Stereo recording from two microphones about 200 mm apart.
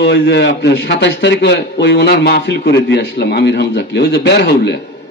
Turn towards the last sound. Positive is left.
turn(degrees=55)  # may be behind; listen again after turning